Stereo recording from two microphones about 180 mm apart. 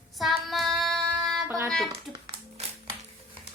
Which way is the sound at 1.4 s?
15° right (ahead or behind).